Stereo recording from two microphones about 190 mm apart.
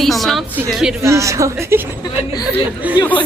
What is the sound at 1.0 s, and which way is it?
Speech, 15° right (ahead or behind).